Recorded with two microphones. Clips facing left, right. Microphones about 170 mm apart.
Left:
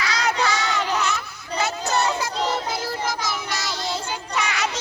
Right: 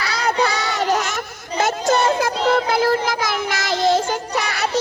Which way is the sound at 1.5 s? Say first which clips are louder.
Right 5 dB; 50° right (ahead or behind).